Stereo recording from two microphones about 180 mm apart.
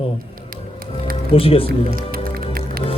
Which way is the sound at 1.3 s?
30° left (ahead or behind).